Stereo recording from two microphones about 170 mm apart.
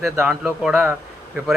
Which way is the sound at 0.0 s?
Centre (ahead or behind).